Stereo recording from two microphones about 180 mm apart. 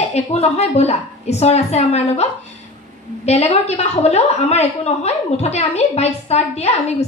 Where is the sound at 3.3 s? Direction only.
35° left (ahead or behind).